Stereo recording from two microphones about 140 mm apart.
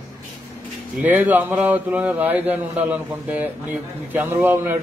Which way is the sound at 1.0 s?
10° right (ahead or behind).